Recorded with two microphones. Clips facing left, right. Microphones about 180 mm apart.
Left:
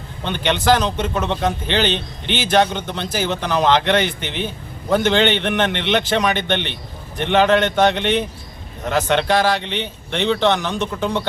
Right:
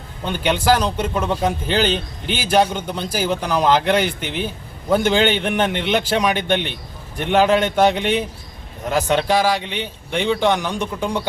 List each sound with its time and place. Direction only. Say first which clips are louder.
0.3 s a man's voice: even; 5° right (ahead or behind)